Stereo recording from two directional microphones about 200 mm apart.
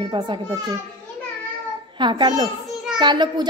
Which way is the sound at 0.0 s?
25° right (ahead or behind).